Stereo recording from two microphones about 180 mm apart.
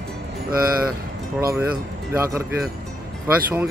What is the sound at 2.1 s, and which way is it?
Speech, 15° right (ahead or behind).